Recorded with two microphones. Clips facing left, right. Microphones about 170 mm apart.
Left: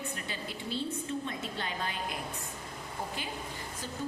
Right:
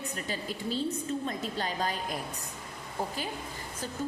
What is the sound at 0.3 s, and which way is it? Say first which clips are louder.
A woman's voice: right 4 dB; 40° right (ahead or behind).